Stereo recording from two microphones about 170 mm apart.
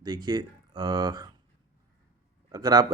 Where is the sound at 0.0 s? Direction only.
25° right (ahead or behind).